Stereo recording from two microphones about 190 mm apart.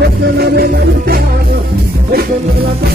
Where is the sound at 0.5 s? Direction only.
55° right (ahead or behind).